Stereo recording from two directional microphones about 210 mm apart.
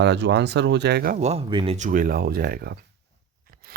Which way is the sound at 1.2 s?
30° right (ahead or behind).